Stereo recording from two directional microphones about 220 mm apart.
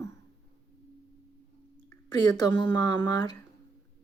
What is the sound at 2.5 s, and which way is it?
Speech, 25° left (ahead or behind).